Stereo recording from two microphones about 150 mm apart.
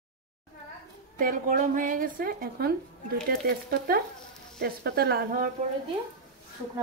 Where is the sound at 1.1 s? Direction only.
65° right (ahead or behind); by 5.5 s 80° right.